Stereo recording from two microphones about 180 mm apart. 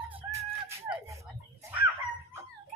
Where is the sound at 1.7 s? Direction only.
10° right (ahead or behind).